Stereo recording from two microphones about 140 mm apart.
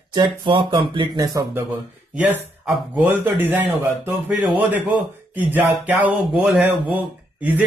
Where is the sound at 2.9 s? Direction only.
15° right (ahead or behind).